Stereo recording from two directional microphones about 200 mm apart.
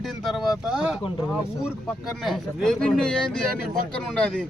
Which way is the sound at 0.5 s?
5° right (ahead or behind).